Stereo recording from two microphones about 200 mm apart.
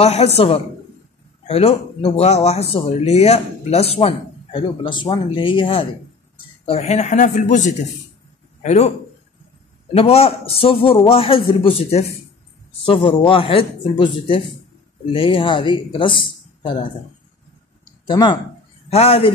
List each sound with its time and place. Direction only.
0.0 s speech: 30° left (ahead or behind)
9.9 s speech: 30° left (ahead or behind)
13.2 s speech: 25° left (ahead or behind)
18.0 s speech: 20° left (ahead or behind)